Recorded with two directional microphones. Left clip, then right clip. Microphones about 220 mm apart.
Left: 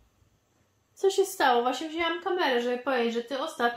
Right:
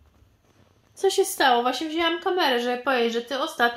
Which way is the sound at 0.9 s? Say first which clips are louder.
Right 3 dB; 10° right (ahead or behind).